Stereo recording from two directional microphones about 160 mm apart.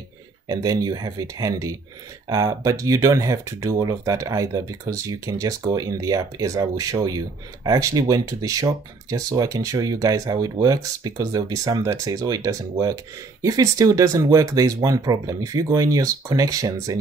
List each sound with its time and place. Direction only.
0.5 s speech: 25° right (ahead or behind)